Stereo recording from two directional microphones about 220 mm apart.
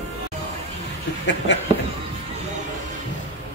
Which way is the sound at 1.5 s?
50° left (ahead or behind).